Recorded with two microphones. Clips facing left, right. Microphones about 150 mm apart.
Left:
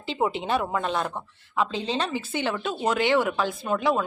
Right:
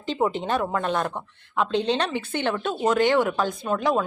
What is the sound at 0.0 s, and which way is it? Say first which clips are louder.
A woman's voice: right 2 dB; 10° left (ahead or behind).